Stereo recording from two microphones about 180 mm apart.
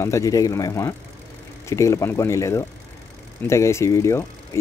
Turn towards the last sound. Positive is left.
turn(degrees=15)  # may be behind; listen again after turning